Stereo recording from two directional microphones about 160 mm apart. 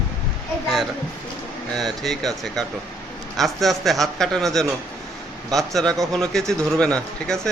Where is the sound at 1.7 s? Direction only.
Centre (ahead or behind).